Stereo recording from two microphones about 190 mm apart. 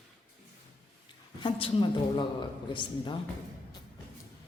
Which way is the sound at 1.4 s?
25° left (ahead or behind).